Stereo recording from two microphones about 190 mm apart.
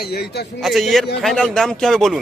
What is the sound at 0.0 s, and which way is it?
Speech, 55° left (ahead or behind).